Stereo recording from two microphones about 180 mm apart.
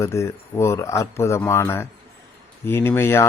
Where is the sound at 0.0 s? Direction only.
15° left (ahead or behind).